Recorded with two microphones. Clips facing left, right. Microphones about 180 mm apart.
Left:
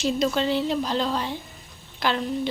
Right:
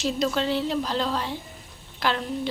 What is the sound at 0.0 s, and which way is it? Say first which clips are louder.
A woman's voice: left 2 dB; centre (ahead or behind).